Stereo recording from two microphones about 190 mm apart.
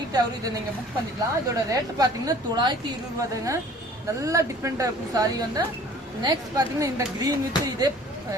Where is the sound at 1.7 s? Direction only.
20° right (ahead or behind).